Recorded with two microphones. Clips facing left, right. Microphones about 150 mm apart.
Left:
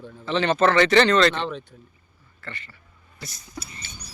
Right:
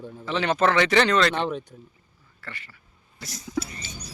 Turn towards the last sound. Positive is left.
turn(degrees=-90)